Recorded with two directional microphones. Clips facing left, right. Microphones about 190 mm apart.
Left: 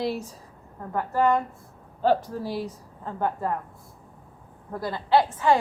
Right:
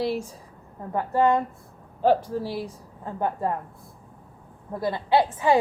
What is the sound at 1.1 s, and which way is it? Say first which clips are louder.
A woman's voice: right 1 dB; 20° right (ahead or behind).